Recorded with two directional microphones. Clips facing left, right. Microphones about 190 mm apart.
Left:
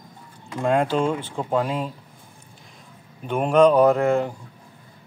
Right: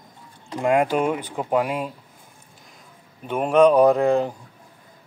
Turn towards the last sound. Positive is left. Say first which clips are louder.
# right 1 dB
turn(degrees=-15)  # may be behind; listen again after turning